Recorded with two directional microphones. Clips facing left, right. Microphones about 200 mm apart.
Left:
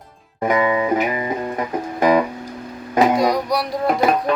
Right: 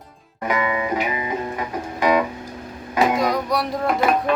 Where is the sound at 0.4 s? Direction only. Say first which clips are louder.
Left 5 dB; 30° left (ahead or behind).